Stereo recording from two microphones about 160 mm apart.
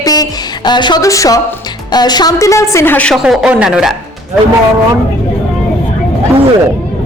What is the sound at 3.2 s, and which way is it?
Speech, 5° right (ahead or behind).